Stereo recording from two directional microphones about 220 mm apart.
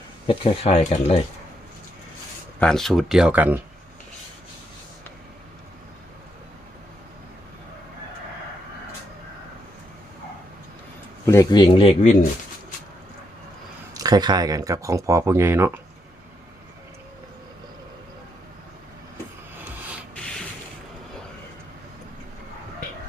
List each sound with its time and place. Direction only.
0.3 s speech: 25° left (ahead or behind)
2.6 s speech: centre (ahead or behind)
11.3 s speech: 15° left (ahead or behind)
13.9 s speech: 15° right (ahead or behind)